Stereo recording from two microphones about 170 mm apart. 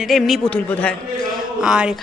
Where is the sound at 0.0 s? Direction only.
Centre (ahead or behind).